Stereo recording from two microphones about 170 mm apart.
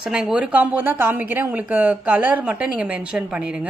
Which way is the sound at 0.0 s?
5° right (ahead or behind).